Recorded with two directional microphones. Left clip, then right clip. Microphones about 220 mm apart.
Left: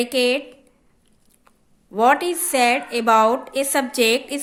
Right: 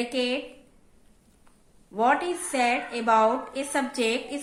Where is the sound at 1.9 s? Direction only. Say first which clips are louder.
Left 6 dB; 45° left (ahead or behind).